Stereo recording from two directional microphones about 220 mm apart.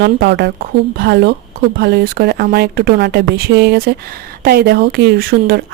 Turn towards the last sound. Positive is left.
turn(degrees=-45)  # may be behind; listen again after turning